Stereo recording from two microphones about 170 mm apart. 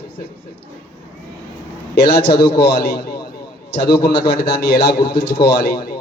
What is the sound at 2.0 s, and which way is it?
A man's voice, 70° left (ahead or behind).